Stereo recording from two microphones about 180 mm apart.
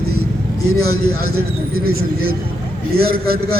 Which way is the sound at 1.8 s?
60° right (ahead or behind).